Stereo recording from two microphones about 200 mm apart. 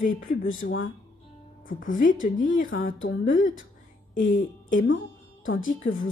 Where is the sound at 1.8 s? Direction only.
40° left (ahead or behind).